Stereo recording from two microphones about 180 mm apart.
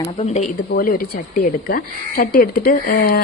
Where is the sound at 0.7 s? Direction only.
55° left (ahead or behind).